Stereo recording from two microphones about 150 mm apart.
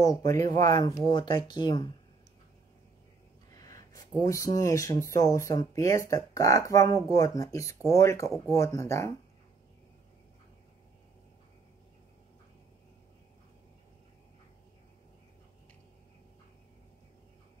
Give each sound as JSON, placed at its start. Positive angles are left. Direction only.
{"t": 0.3, "sound": "speech", "side_deg": 25}
{"t": 3.5, "sound": "speech", "side_deg": 25}